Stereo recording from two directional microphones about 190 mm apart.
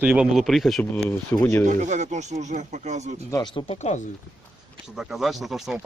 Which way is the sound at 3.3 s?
25° left (ahead or behind).